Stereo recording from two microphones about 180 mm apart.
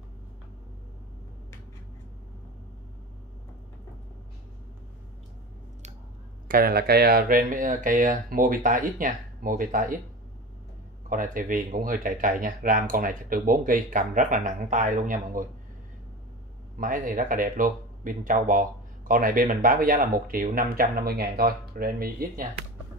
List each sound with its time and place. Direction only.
6.4 s speech: 55° right (ahead or behind)
11.1 s speech: 50° right (ahead or behind)
16.7 s speech: 50° right (ahead or behind)